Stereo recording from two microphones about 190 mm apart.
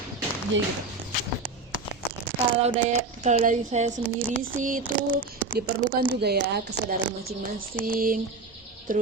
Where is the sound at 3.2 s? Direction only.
40° right (ahead or behind).